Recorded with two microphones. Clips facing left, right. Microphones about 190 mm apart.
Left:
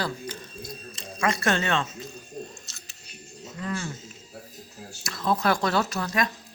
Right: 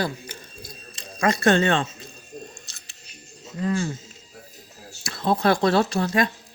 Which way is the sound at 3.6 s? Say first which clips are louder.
Right 7 dB; 30° right (ahead or behind).